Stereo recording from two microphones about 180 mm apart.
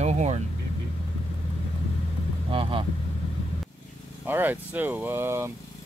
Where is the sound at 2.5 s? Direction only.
30° right (ahead or behind).